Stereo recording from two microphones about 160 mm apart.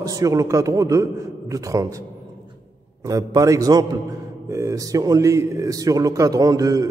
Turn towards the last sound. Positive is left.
turn(degrees=-20)  # may be behind; listen again after turning